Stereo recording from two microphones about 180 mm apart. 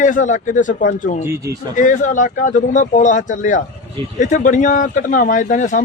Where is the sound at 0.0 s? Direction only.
45° left (ahead or behind).